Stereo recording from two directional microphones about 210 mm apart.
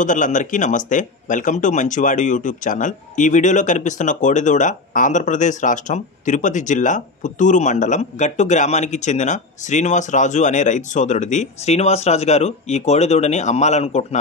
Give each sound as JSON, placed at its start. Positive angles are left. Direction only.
{"t": 0.0, "sound": "speech", "side_deg": 35}